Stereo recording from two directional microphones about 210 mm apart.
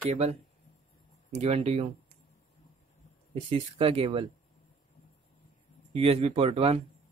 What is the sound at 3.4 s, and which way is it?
Speech, 25° right (ahead or behind).